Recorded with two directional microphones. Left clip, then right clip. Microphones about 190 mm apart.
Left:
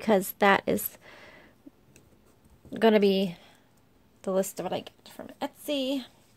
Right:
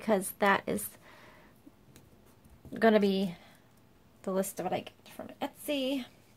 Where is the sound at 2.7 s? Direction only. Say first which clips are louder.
Left 4 dB; 30° left (ahead or behind).